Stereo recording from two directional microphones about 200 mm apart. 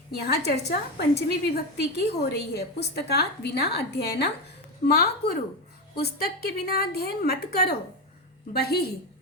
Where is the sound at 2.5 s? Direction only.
55° left (ahead or behind).